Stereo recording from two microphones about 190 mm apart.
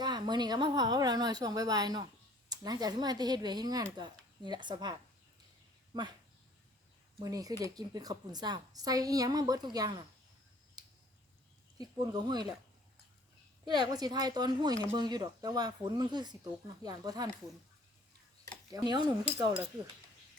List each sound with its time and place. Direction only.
0.0 s a woman's voice: 20° right (ahead or behind)
7.2 s a woman's voice: 20° right (ahead or behind)
10.8 s a sound: 20° right (ahead or behind)
11.8 s a woman's voice: 20° right (ahead or behind)
13.7 s a woman's voice: 20° right (ahead or behind)
18.7 s a woman's voice: 20° right (ahead or behind)